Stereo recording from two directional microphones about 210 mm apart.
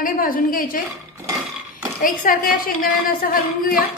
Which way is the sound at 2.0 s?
40° left (ahead or behind).